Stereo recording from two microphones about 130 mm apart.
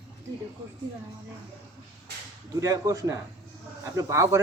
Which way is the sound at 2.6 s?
25° right (ahead or behind).